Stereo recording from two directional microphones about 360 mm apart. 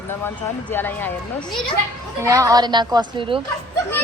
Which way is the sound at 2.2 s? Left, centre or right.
Centre.